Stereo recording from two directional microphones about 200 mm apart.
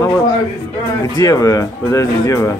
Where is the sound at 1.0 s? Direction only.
20° left (ahead or behind).